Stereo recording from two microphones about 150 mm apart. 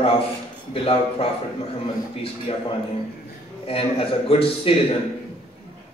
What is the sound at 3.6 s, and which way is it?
Speech, 40° left (ahead or behind).